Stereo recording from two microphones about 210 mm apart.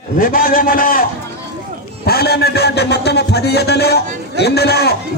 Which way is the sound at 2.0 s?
50° left (ahead or behind).